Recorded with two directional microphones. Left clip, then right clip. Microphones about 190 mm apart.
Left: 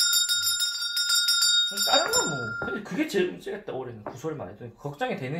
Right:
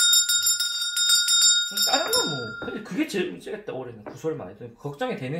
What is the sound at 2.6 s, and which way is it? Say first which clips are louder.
Speech: even; 10° right (ahead or behind).